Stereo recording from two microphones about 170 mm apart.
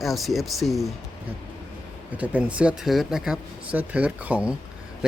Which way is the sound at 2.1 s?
10° right (ahead or behind).